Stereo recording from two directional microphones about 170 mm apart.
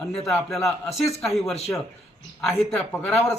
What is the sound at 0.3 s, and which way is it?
A man's voice, centre (ahead or behind).